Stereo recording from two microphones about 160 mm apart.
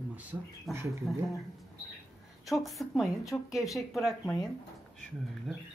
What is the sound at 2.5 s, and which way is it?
Speech, centre (ahead or behind).